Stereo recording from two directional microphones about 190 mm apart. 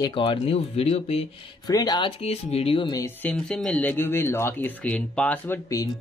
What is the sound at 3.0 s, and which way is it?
Speech, 10° left (ahead or behind).